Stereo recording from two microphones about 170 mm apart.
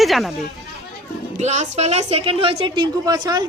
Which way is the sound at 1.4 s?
45° right (ahead or behind).